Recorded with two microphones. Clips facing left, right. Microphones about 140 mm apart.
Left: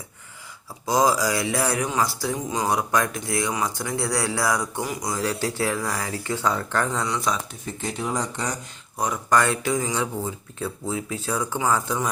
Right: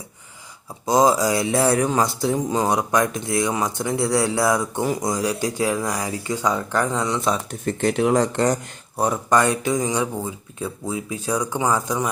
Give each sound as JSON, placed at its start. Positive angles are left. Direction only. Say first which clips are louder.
{"t": 0.9, "sound": "speech", "louder": "right 4 dB", "side_deg": -20}
{"t": 5.2, "sound": "speech", "louder": "right 3 dB", "side_deg": -15}
{"t": 7.6, "sound": "speech", "louder": "right 10 dB", "side_deg": -65}
{"t": 9.0, "sound": "speech", "louder": "right 5 dB", "side_deg": -30}
{"t": 9.3, "sound": "speech", "louder": "right 1 dB", "side_deg": -20}